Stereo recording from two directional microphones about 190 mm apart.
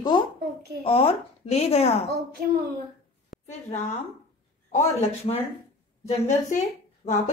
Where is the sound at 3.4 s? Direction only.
35° left (ahead or behind).